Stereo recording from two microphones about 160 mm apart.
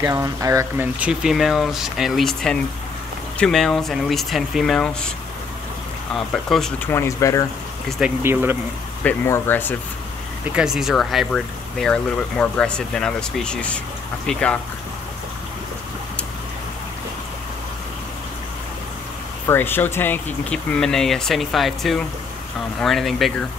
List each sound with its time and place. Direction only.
0.1 s speech: 20° right (ahead or behind)
0.9 s speech: 5° right (ahead or behind)
6.1 s speech: centre (ahead or behind)
6.9 s speech: 15° left (ahead or behind)
8.0 s speech: 15° right (ahead or behind)
9.0 s speech: 15° left (ahead or behind)
10.5 s speech: 5° right (ahead or behind)
19.4 s speech: 15° left (ahead or behind)